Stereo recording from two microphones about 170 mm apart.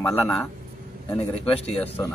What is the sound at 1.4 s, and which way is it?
Speech, 35° left (ahead or behind).